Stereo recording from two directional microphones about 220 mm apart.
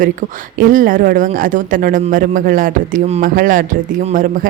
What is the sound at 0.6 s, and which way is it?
Speech, 40° right (ahead or behind).